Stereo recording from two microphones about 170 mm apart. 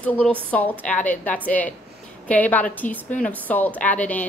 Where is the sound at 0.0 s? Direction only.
5° left (ahead or behind).